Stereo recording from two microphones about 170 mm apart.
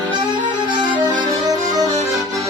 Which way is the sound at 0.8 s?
25° right (ahead or behind).